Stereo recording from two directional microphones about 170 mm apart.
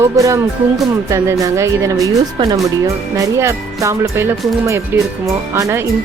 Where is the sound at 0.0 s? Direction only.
20° right (ahead or behind).